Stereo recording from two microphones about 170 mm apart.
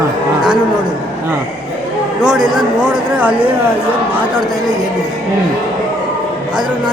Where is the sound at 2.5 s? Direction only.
5° right (ahead or behind).